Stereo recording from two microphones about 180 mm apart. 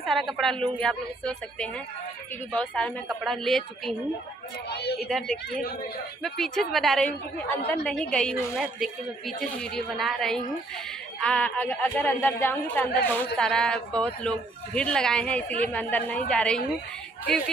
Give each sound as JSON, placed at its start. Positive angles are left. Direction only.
{"t": 0.0, "sound": "speech", "side_deg": 0}
{"t": 4.6, "sound": "a woman's voice", "side_deg": 65}
{"t": 6.2, "sound": "a woman's voice", "side_deg": 0}